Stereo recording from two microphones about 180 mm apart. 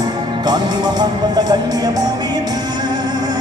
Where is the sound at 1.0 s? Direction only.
20° right (ahead or behind).